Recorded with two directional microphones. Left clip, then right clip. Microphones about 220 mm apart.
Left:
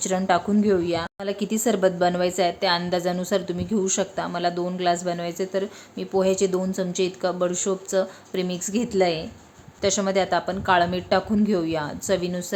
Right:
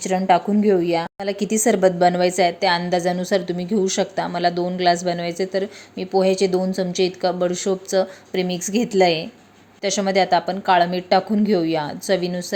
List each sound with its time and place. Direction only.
0.0 s a woman's voice: 10° right (ahead or behind)